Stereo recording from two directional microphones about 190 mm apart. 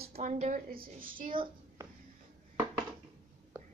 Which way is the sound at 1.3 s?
25° right (ahead or behind).